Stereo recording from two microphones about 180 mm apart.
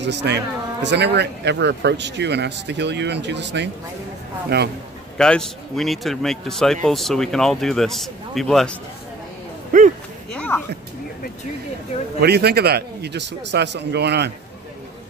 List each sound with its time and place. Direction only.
0.0 s speech: 70° right (ahead or behind)
4.5 s a man's voice: 65° right (ahead or behind)
5.1 s speech: 5° left (ahead or behind)
9.7 s a sound: 45° right (ahead or behind)
10.3 s a sound: 5° left (ahead or behind)
12.2 s speech: 65° right (ahead or behind)